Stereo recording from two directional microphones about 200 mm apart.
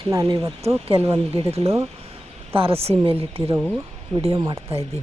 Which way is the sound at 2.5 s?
30° right (ahead or behind).